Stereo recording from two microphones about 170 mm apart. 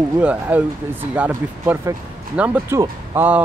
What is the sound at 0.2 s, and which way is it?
Speech, 10° right (ahead or behind).